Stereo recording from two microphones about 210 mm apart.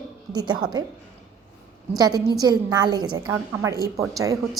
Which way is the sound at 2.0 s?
15° right (ahead or behind).